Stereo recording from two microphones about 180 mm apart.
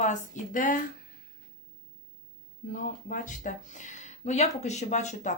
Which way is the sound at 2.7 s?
45° left (ahead or behind).